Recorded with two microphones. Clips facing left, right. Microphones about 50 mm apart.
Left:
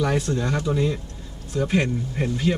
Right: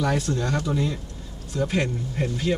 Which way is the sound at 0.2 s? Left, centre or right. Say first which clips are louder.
Left 1 dB; centre.